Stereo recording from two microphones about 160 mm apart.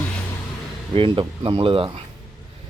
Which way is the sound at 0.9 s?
35° right (ahead or behind).